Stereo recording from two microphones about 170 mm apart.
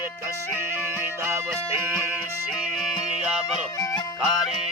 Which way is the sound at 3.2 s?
5° right (ahead or behind).